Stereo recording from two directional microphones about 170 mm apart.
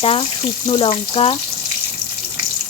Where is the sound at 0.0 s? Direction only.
35° left (ahead or behind).